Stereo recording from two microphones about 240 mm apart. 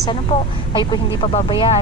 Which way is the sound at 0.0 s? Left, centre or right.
Left.